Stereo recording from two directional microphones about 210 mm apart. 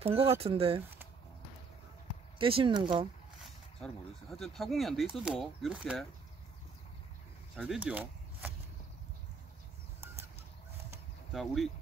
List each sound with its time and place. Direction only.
0.0 s speech: 30° right (ahead or behind)
2.3 s speech: 25° right (ahead or behind)
3.8 s speech: centre (ahead or behind)
7.5 s speech: centre (ahead or behind)
11.3 s speech: centre (ahead or behind)